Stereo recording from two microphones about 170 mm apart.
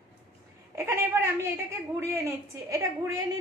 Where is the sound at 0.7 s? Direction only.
15° right (ahead or behind).